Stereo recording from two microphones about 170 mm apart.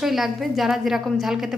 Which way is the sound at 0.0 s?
Centre (ahead or behind).